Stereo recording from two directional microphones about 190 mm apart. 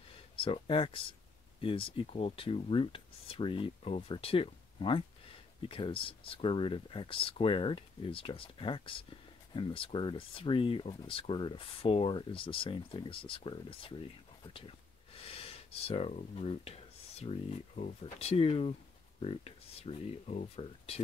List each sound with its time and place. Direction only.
0.4 s speech: 25° left (ahead or behind)
15.1 s speech: 30° left (ahead or behind)